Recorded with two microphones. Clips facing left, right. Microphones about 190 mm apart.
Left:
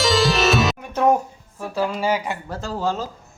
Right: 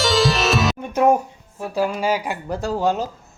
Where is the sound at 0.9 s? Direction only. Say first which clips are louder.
Right 2 dB; 10° right (ahead or behind).